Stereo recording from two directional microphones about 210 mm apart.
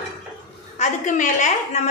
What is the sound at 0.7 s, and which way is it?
A woman's voice, 35° left (ahead or behind).